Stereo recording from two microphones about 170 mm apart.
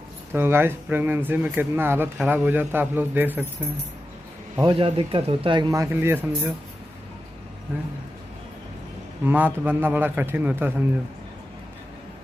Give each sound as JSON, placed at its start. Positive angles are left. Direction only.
{"t": 0.3, "sound": "speech", "side_deg": -15}
{"t": 4.6, "sound": "speech", "side_deg": -35}
{"t": 9.2, "sound": "speech", "side_deg": -10}